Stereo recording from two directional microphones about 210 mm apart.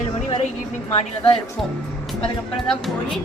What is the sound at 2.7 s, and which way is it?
Speech, centre (ahead or behind).